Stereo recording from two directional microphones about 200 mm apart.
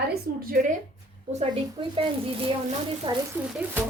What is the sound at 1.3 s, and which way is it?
Speech, 25° right (ahead or behind).